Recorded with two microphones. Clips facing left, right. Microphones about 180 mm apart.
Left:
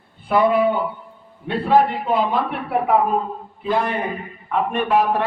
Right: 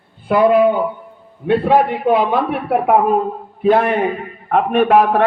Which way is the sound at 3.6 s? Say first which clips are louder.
Right 8 dB; 60° right (ahead or behind).